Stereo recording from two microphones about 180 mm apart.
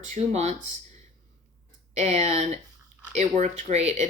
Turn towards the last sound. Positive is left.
turn(degrees=-40)  # may be behind; listen again after turning